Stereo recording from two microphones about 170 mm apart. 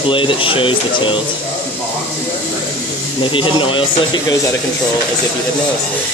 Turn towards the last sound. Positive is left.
turn(degrees=25)  # may be behind; listen again after turning